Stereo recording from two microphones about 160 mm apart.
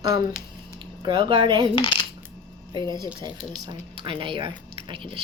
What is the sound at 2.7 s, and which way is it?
Speech, 30° right (ahead or behind).